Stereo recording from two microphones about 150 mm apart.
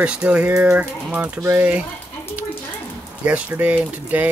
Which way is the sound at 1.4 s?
20° right (ahead or behind).